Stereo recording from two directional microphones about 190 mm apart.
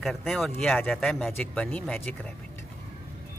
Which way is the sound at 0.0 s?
Centre (ahead or behind).